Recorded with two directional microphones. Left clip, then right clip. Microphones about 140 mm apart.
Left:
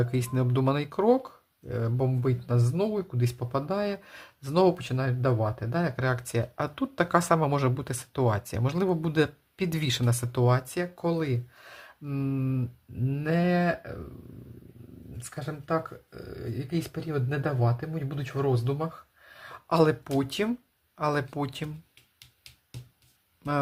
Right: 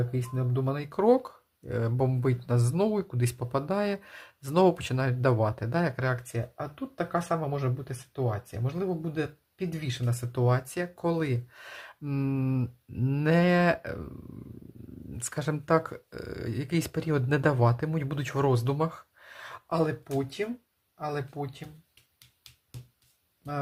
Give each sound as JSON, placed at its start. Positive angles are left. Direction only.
{"t": 0.0, "sound": "speech", "side_deg": 20}
{"t": 0.9, "sound": "speech", "side_deg": -5}
{"t": 6.3, "sound": "speech", "side_deg": 25}
{"t": 10.1, "sound": "speech", "side_deg": 20}
{"t": 10.4, "sound": "speech", "side_deg": 5}
{"t": 13.1, "sound": "cattle", "side_deg": -20}
{"t": 15.2, "sound": "speech", "side_deg": -35}
{"t": 19.6, "sound": "speech", "side_deg": 15}
{"t": 20.1, "sound": "speech", "side_deg": 35}